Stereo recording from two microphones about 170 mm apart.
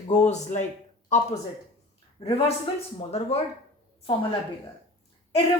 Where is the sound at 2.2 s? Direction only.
35° left (ahead or behind).